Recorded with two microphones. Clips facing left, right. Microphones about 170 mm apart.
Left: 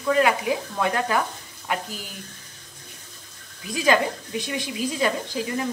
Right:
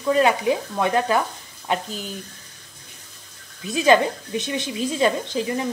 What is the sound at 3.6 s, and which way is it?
Speech, 25° right (ahead or behind).